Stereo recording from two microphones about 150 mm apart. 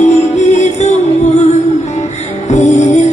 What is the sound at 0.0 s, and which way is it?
Music, 50° left (ahead or behind).